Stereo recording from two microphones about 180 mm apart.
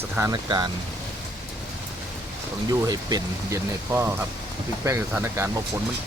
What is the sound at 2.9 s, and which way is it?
Speech, 20° right (ahead or behind).